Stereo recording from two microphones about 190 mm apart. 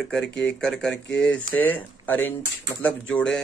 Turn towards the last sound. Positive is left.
turn(degrees=5)  # may be behind; listen again after turning